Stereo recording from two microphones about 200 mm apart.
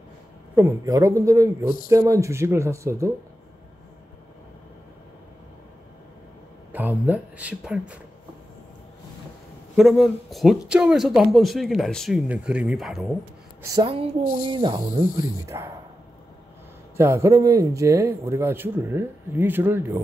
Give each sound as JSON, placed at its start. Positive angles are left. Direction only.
{"t": 0.6, "sound": "a man's voice", "side_deg": -15}
{"t": 6.7, "sound": "speech", "side_deg": -10}
{"t": 9.8, "sound": "speech", "side_deg": 0}
{"t": 13.6, "sound": "a woman's voice", "side_deg": -15}
{"t": 13.8, "sound": "speech", "side_deg": -25}
{"t": 16.9, "sound": "a man's voice", "side_deg": -15}